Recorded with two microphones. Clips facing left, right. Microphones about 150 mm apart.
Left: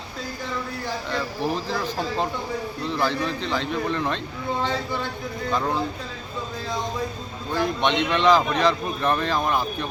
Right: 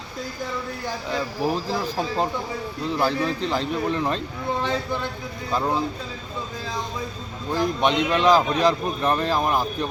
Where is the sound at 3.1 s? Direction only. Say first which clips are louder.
Right 2 dB; 40° right (ahead or behind).